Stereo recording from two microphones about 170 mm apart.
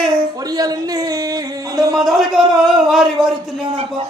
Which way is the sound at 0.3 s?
20° right (ahead or behind).